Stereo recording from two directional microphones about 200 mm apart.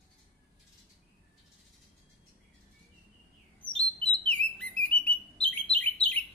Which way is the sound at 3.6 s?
5° left (ahead or behind).